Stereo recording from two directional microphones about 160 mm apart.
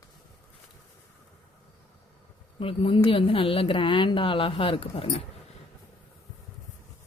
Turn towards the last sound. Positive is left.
turn(degrees=35)  # may be behind; listen again after turning